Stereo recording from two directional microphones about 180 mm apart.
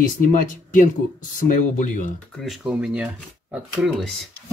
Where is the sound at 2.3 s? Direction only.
Centre (ahead or behind).